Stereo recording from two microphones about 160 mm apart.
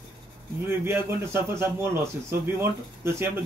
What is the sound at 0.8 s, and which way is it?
A man's voice, 15° right (ahead or behind).